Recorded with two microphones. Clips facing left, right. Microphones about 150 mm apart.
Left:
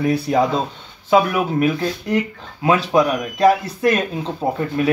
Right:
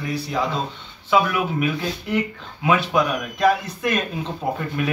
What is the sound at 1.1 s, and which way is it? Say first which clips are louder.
Speech: left 4 dB; 35° left (ahead or behind).